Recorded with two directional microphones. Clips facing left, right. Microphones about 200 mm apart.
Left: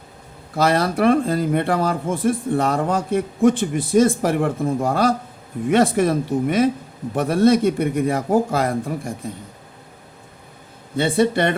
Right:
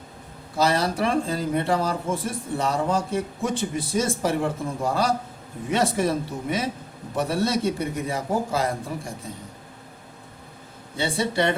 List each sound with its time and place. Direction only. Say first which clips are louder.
0.5 s a man's voice: left 4 dB; 55° left (ahead or behind)
10.9 s a man's voice: left 7 dB; 55° left (ahead or behind)